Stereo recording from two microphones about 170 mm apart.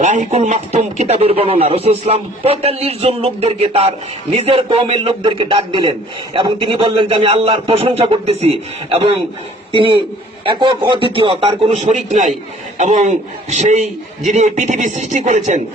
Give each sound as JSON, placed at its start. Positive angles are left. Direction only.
{"t": 0.0, "sound": "a man's voice", "side_deg": -45}